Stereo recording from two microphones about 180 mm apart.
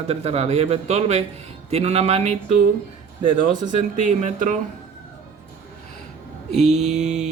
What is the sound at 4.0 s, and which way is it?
Speech, 40° right (ahead or behind).